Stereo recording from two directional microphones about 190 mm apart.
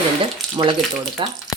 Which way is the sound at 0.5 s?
25° right (ahead or behind).